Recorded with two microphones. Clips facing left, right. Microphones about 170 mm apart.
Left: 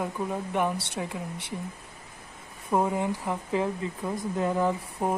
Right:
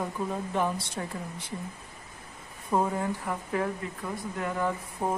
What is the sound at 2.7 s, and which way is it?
Speech, 15° left (ahead or behind).